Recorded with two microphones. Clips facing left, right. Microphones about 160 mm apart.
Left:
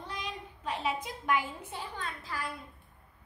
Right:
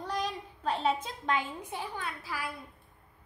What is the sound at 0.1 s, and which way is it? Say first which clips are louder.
A woman's voice: right 8 dB; 35° right (ahead or behind).